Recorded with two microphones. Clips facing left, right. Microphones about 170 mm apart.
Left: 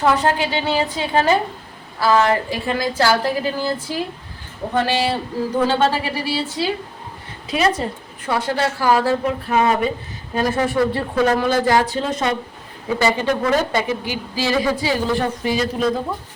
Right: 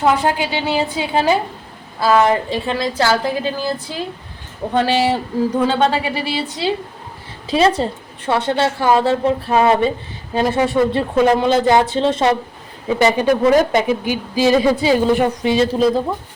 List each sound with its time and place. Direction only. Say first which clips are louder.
0.0 s a woman's voice: right 1 dB; 15° right (ahead or behind)
4.7 s a woman's voice: right 3 dB; 15° right (ahead or behind)
7.4 s a woman's voice: right 4 dB; 30° right (ahead or behind)
13.0 s a woman's voice: right 5 dB; 15° right (ahead or behind)